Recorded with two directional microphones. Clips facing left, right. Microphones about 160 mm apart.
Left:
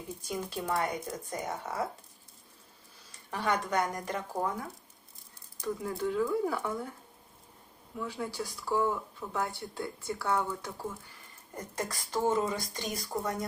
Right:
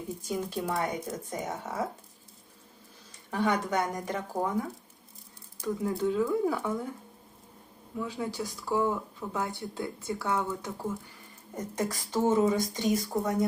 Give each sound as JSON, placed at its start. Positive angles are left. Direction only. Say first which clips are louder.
{"t": 0.3, "sound": "speech", "louder": "right 2 dB", "side_deg": -15}
{"t": 3.3, "sound": "speech", "louder": "right 2 dB", "side_deg": -15}
{"t": 5.6, "sound": "speech", "louder": "right 4 dB", "side_deg": -15}
{"t": 7.9, "sound": "speech", "louder": "right 3 dB", "side_deg": -15}